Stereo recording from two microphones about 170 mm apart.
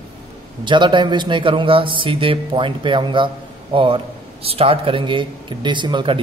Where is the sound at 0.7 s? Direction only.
30° right (ahead or behind).